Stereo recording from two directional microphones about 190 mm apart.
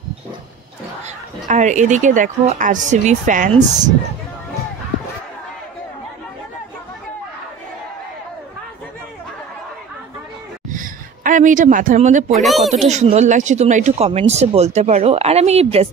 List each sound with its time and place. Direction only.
1.0 s speech: 40° right (ahead or behind)
10.7 s a sound: 45° right (ahead or behind)
12.3 s speech: centre (ahead or behind)
12.7 s speech: 35° right (ahead or behind)